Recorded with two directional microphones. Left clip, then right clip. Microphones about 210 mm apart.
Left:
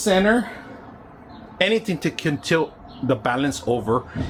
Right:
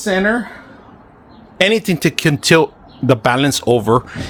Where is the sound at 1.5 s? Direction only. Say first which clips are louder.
Right 6 dB; 50° right (ahead or behind).